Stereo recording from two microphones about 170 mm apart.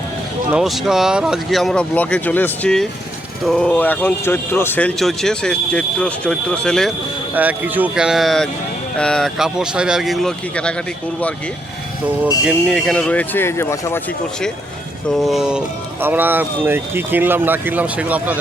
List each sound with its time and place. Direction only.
0.5 s speech: centre (ahead or behind)
7.3 s speech: 10° right (ahead or behind); by 10.8 s 5° left (ahead or behind)
12.5 s speech: centre (ahead or behind)
15.1 s speech: centre (ahead or behind)